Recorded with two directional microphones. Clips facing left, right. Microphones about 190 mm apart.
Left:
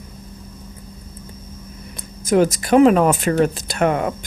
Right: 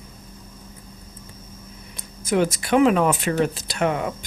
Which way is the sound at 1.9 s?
45° left (ahead or behind).